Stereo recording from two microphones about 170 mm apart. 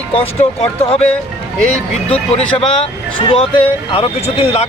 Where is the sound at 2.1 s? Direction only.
35° left (ahead or behind).